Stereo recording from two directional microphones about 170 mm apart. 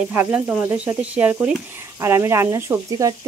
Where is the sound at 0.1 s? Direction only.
10° right (ahead or behind).